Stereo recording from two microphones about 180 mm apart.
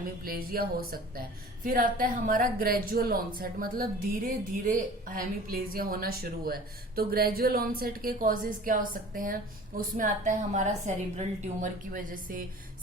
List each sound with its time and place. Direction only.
0.3 s a woman's voice: 55° right (ahead or behind)